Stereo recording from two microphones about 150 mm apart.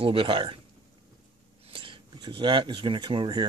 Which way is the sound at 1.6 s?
35° right (ahead or behind).